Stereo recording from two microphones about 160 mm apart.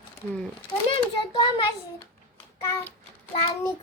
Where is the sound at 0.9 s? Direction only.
35° left (ahead or behind).